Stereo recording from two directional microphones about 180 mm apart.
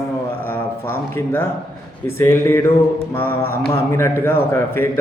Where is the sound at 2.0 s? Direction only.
15° left (ahead or behind).